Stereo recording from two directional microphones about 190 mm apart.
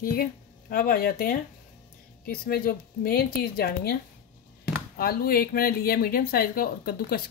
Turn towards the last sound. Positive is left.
turn(degrees=55)  # may be behind; listen again after turning